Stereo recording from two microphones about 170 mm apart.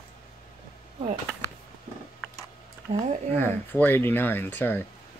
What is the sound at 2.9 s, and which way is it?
Speech, 40° right (ahead or behind).